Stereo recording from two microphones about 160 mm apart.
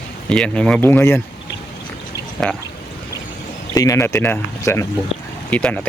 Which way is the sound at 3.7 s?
20° left (ahead or behind).